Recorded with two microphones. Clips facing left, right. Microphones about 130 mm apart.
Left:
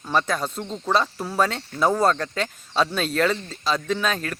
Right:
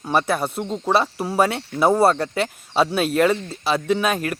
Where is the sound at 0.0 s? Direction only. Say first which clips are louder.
Right 3 dB; 10° right (ahead or behind).